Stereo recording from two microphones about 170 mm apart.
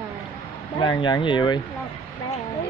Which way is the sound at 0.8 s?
25° left (ahead or behind).